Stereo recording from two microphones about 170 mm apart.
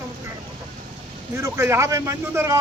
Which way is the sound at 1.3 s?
15° right (ahead or behind).